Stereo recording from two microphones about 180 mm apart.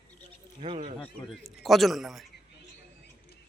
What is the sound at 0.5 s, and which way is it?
Speech, 35° right (ahead or behind).